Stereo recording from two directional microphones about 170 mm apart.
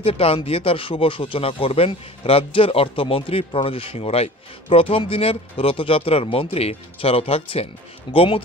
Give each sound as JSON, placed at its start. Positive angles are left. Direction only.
{"t": 0.0, "sound": "speech", "side_deg": 35}